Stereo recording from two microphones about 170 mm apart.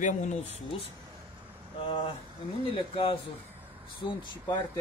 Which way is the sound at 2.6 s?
30° left (ahead or behind).